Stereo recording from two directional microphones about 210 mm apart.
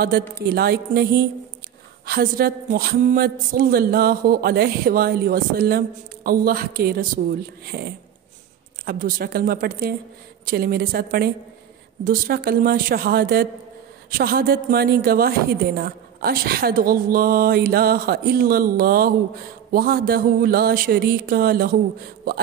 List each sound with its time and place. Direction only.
0.3 s a woman's voice: 45° right (ahead or behind)